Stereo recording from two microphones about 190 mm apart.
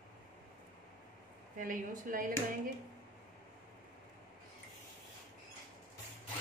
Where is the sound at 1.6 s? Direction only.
45° right (ahead or behind).